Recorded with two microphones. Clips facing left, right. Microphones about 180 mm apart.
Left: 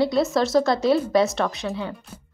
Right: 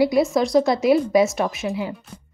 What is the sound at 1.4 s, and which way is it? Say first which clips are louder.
Speech: right 2 dB; 15° right (ahead or behind).